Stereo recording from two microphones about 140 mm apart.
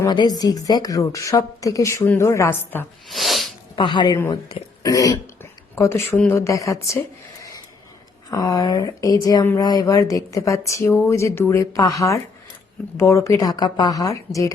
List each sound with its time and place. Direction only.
0.1 s speech: 30° left (ahead or behind); by 2.8 s 15° left (ahead or behind)
3.1 s sneeze: centre (ahead or behind)
3.8 s speech: 35° left (ahead or behind)
4.8 s speech: 25° left (ahead or behind)
8.3 s speech: 25° left (ahead or behind)